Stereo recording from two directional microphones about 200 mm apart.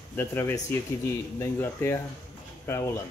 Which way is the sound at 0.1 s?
10° left (ahead or behind).